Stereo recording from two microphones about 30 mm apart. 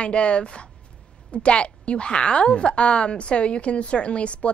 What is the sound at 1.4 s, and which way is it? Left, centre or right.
A woman's voice, left.